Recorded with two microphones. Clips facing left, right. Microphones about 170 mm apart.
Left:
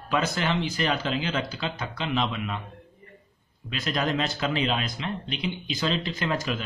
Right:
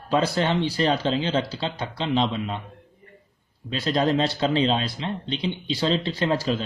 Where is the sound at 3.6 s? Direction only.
30° right (ahead or behind).